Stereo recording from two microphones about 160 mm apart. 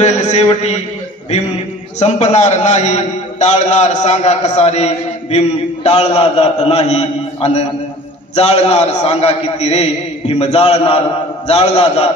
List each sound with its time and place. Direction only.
0.0 s a man's voice: 45° left (ahead or behind)